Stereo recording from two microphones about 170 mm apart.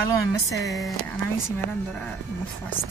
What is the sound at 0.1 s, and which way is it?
Speech, 20° left (ahead or behind).